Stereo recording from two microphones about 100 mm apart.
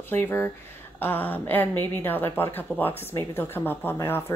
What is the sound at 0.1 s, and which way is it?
A woman's voice, 20° left (ahead or behind).